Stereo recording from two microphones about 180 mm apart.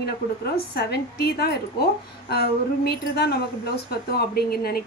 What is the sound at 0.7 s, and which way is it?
Speech, 60° left (ahead or behind).